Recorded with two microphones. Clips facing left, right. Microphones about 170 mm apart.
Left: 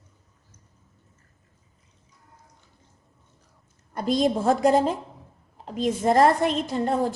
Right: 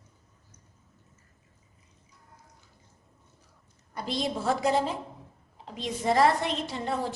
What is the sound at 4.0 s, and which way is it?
A woman's voice, 50° left (ahead or behind).